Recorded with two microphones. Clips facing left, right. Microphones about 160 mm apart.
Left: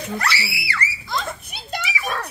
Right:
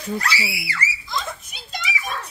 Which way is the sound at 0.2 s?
65° left (ahead or behind).